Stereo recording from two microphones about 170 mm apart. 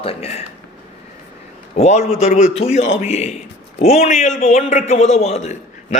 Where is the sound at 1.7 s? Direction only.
40° left (ahead or behind).